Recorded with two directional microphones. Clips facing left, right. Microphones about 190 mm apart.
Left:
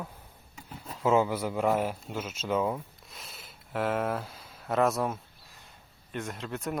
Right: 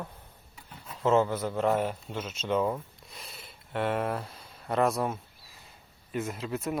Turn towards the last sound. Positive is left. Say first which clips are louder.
# right 2 dB
turn(degrees=0)  # may be behind; listen again after turning